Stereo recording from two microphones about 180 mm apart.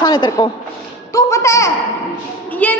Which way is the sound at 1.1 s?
15° left (ahead or behind).